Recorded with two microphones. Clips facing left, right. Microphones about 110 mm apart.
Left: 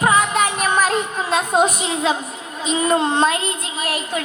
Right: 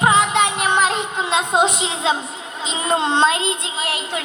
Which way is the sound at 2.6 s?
25° right (ahead or behind).